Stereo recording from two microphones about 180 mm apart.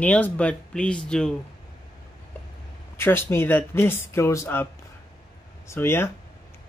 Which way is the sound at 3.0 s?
10° left (ahead or behind).